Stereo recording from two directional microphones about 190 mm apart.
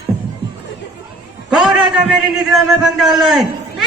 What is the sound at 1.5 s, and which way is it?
A man's voice, 5° right (ahead or behind).